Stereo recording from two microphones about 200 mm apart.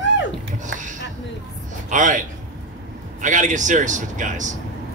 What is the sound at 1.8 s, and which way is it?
A man's voice, 40° right (ahead or behind).